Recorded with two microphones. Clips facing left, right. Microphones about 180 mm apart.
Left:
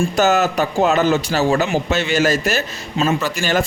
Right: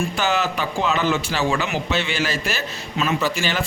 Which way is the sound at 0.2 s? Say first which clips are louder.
Left 8 dB; 45° left (ahead or behind).